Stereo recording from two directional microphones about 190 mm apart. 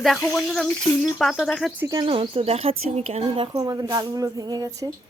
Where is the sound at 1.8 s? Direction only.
20° right (ahead or behind).